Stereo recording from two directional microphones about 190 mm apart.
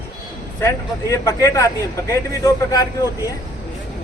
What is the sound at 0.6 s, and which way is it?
Speech, 15° left (ahead or behind).